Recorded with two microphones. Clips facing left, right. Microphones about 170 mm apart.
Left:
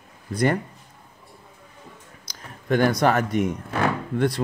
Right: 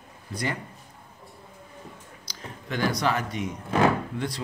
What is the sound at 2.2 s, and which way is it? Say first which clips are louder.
A man's voice: right 1 dB; 50° left (ahead or behind).